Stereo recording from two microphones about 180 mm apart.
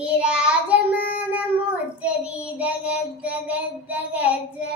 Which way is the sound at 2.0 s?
10° right (ahead or behind).